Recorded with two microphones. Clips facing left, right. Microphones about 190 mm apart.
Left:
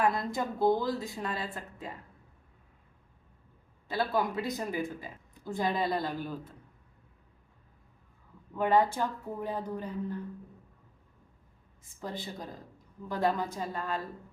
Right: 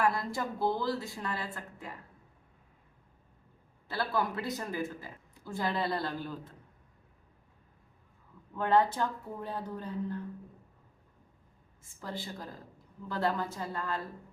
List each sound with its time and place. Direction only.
0.0 s speech: 20° left (ahead or behind)
3.8 s speech: 20° left (ahead or behind)
8.5 s speech: 10° left (ahead or behind)
11.8 s speech: 20° left (ahead or behind)